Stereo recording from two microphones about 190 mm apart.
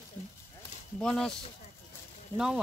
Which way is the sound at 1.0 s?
5° left (ahead or behind).